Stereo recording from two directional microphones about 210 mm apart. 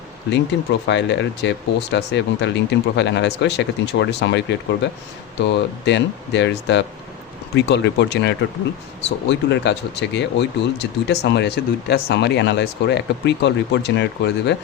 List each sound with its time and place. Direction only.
0.5 s speech: 55° left (ahead or behind)